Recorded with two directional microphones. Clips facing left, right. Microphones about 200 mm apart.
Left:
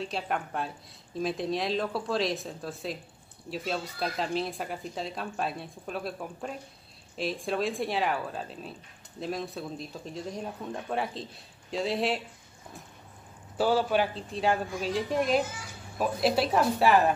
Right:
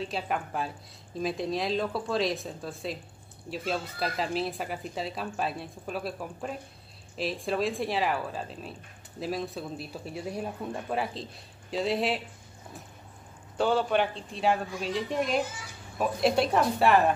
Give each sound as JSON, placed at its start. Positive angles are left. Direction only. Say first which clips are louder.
{"t": 0.0, "sound": "speech", "louder": "even", "side_deg": 0}
{"t": 13.6, "sound": "speech", "louder": "even", "side_deg": 5}